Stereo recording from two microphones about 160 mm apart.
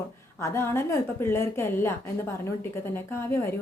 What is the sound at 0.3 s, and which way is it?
Speech, 15° left (ahead or behind).